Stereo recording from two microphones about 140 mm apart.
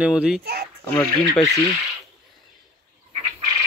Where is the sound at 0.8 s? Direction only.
20° left (ahead or behind).